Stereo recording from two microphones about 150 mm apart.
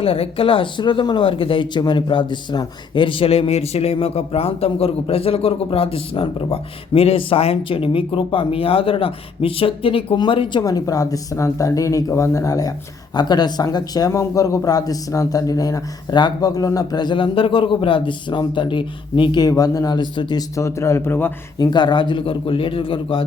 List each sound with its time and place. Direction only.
0.0 s speech: 40° left (ahead or behind)
10.6 s speech: 25° left (ahead or behind)
20.6 s a man's voice: 20° left (ahead or behind)
21.6 s speech: 30° left (ahead or behind)